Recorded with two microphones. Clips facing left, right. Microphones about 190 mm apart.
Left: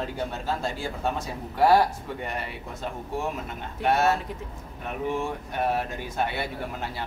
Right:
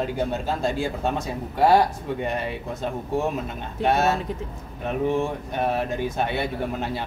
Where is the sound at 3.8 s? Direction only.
20° right (ahead or behind).